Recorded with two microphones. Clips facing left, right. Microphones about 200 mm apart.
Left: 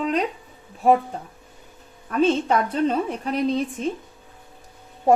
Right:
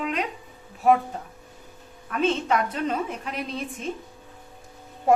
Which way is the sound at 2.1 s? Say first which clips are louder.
Left 4 dB; 35° left (ahead or behind).